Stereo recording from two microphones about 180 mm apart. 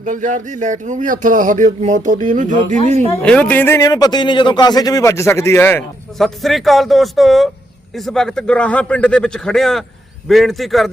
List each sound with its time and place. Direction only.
0.0 s speech: 45° right (ahead or behind)
3.2 s a man's voice: 5° left (ahead or behind)
6.1 s a man's voice: centre (ahead or behind)